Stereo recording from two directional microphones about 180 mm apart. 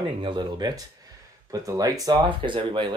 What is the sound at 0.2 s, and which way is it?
Speech, 25° right (ahead or behind).